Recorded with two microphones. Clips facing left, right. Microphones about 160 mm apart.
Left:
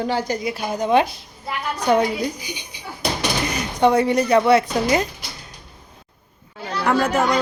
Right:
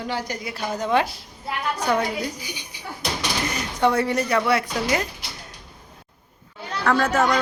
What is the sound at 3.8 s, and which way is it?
A woman's voice, 15° left (ahead or behind).